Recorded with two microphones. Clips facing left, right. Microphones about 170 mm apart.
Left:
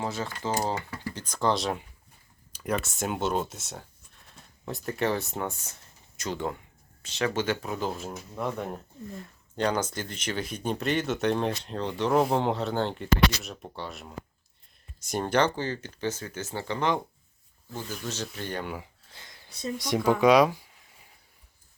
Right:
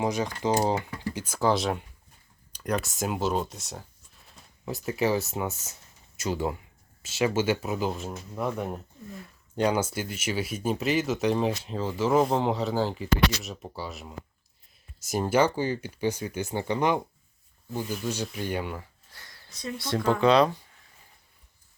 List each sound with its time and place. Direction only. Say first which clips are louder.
0.0 s speech: right 5 dB; 15° right (ahead or behind)
18.8 s a sound: left 1 dB; 20° left (ahead or behind)
19.6 s speech: left 1 dB; 15° left (ahead or behind)